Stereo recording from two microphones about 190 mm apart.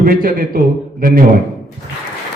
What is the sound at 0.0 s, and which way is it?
A man's voice, 50° right (ahead or behind).